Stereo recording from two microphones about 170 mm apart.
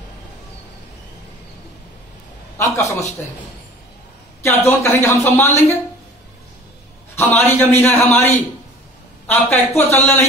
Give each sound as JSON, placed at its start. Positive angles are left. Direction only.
{"t": 2.5, "sound": "a man's voice", "side_deg": 15}
{"t": 4.4, "sound": "a man's voice", "side_deg": 15}
{"t": 7.2, "sound": "a man's voice", "side_deg": 15}